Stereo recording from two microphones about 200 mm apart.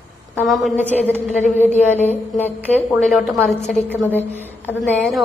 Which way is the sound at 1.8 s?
10° left (ahead or behind).